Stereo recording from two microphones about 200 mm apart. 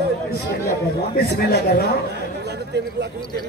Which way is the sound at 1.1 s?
55° left (ahead or behind).